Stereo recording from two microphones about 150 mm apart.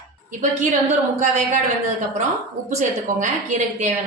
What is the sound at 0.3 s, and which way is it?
A woman's voice, 55° right (ahead or behind).